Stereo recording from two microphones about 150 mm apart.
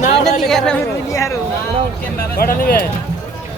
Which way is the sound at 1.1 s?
20° left (ahead or behind).